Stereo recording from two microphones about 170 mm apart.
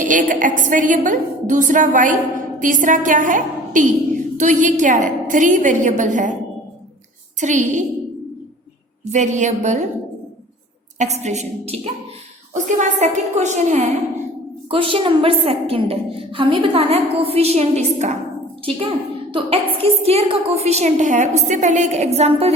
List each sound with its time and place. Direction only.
0.0 s a woman's voice: 50° right (ahead or behind)
7.3 s a woman's voice: 45° right (ahead or behind)
9.0 s a woman's voice: 45° right (ahead or behind)
10.9 s a woman's voice: 40° right (ahead or behind)
12.5 s a woman's voice: 45° right (ahead or behind)
14.7 s a woman's voice: 30° right (ahead or behind)
19.3 s a woman's voice: 35° right (ahead or behind)